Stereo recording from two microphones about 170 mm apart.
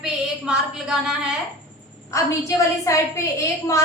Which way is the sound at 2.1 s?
15° left (ahead or behind).